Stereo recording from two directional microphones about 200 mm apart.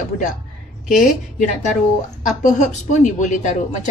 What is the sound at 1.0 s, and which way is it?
A woman's voice, 40° left (ahead or behind).